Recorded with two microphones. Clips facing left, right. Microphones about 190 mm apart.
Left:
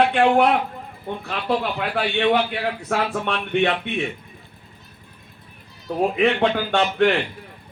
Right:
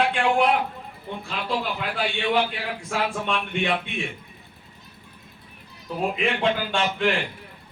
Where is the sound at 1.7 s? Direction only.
65° left (ahead or behind).